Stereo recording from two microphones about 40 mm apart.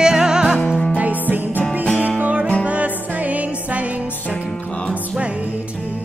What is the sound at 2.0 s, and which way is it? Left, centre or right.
Music, right.